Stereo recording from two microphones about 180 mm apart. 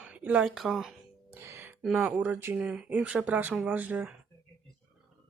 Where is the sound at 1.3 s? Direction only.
15° right (ahead or behind).